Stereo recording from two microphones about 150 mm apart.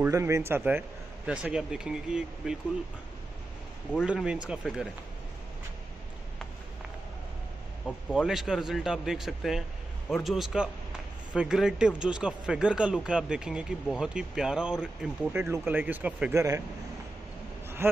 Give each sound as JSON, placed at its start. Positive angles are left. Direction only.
{"t": 0.0, "sound": "a man's voice", "side_deg": -20}
{"t": 4.0, "sound": "speech", "side_deg": -5}
{"t": 7.8, "sound": "a man's voice", "side_deg": -5}
{"t": 16.3, "sound": "speech", "side_deg": -20}